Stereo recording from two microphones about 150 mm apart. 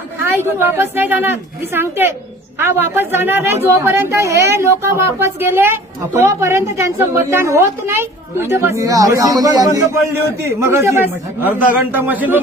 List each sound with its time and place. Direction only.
0.3 s a woman's voice: 15° right (ahead or behind)